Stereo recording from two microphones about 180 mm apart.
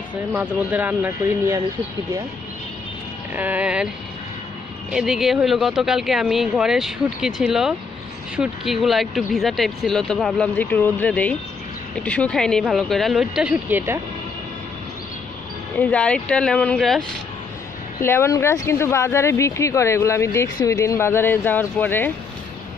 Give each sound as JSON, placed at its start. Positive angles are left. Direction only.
{"t": 0.1, "sound": "speech", "side_deg": -10}
{"t": 3.3, "sound": "speech", "side_deg": -10}
{"t": 4.9, "sound": "speech", "side_deg": -5}
{"t": 15.8, "sound": "speech", "side_deg": 5}
{"t": 18.0, "sound": "speech", "side_deg": 15}